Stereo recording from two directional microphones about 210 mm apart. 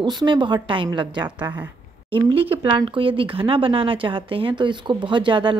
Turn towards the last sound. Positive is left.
turn(degrees=-20)  # may be behind; listen again after turning